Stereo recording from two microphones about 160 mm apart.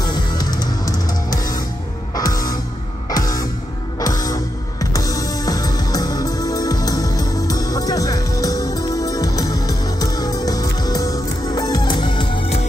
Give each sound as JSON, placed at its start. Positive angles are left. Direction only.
{"t": 0.0, "sound": "music", "side_deg": 25}